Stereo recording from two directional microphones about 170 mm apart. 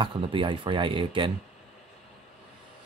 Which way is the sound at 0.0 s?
30° right (ahead or behind).